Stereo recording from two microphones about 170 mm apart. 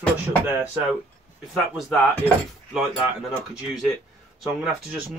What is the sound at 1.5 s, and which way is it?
Speech, 5° left (ahead or behind).